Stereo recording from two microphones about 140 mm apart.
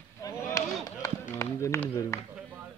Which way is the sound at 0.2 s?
20° left (ahead or behind).